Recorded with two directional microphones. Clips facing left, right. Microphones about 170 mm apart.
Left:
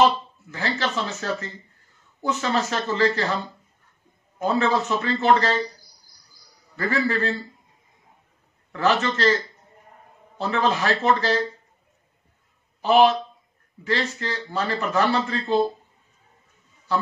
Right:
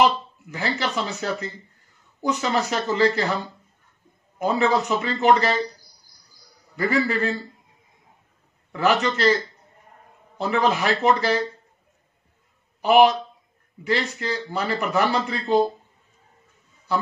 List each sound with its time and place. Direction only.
0.0 s speech: 15° right (ahead or behind)
4.4 s speech: 15° right (ahead or behind)
6.8 s speech: 15° right (ahead or behind)
8.7 s speech: 15° right (ahead or behind)
12.8 s speech: 15° right (ahead or behind)